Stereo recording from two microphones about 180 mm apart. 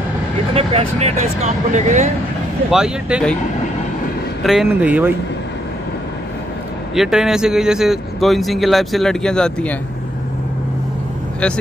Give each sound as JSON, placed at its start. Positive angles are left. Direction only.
{"t": 0.9, "sound": "speech", "side_deg": -35}
{"t": 2.7, "sound": "a man's voice", "side_deg": -5}
{"t": 4.4, "sound": "speech", "side_deg": 0}
{"t": 7.0, "sound": "a man's voice", "side_deg": -5}